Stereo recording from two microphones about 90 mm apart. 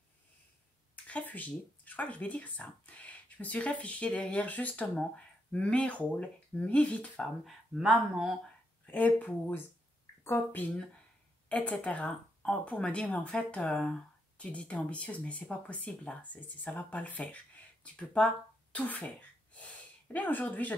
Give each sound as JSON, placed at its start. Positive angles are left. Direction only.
{"t": 1.0, "sound": "speech", "side_deg": 15}
{"t": 7.4, "sound": "speech", "side_deg": -5}
{"t": 8.9, "sound": "speech", "side_deg": 15}